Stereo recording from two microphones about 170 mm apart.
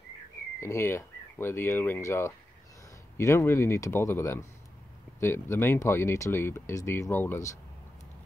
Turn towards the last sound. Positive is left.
turn(degrees=15)  # may be behind; listen again after turning